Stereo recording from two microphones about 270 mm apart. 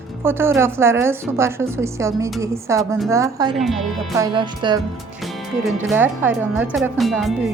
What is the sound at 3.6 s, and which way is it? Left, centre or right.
Speech, centre.